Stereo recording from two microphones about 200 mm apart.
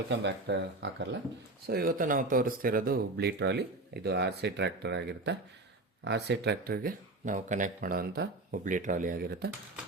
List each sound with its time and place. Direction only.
0.1 s speech: 60° right (ahead or behind)
1.6 s speech: 50° right (ahead or behind)